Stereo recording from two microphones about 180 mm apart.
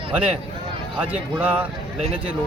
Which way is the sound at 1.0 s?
10° right (ahead or behind).